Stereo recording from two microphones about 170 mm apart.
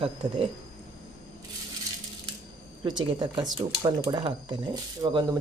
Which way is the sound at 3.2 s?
25° right (ahead or behind).